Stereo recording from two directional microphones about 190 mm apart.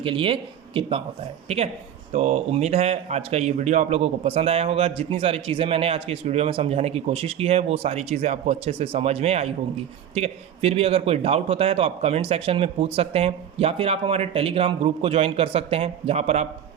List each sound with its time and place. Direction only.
0.0 s speech: 30° right (ahead or behind)